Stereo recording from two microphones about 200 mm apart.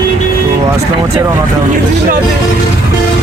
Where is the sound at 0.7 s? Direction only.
15° right (ahead or behind).